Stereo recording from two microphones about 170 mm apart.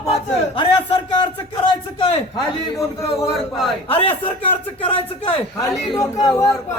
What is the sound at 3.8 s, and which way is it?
A man's voice, 35° left (ahead or behind).